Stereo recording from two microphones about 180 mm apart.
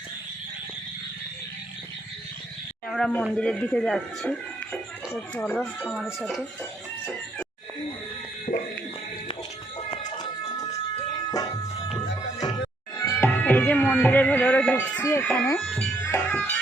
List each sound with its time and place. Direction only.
2.9 s speech: 5° left (ahead or behind)
8.5 s music: 40° left (ahead or behind)
10.2 s music: 25° left (ahead or behind)
13.0 s speech: 15° left (ahead or behind)